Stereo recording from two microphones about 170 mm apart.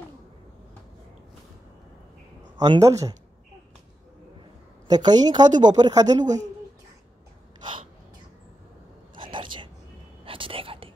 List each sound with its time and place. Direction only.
2.6 s a woman's voice: 20° right (ahead or behind)
4.8 s a woman's voice: 25° right (ahead or behind)
9.3 s a sound: 30° right (ahead or behind)
10.2 s whispering: 30° right (ahead or behind)